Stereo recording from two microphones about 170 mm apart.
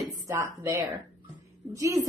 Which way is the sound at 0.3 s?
15° right (ahead or behind).